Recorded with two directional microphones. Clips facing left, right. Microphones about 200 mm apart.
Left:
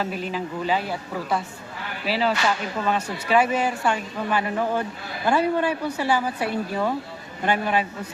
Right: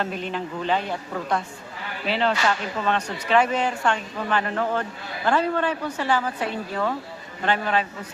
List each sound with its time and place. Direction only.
0.0 s a woman's voice: 5° left (ahead or behind)